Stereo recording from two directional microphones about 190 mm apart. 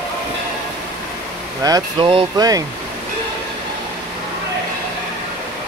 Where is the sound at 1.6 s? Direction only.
20° right (ahead or behind).